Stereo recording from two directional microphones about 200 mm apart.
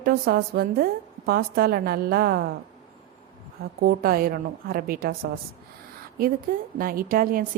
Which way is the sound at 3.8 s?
50° right (ahead or behind).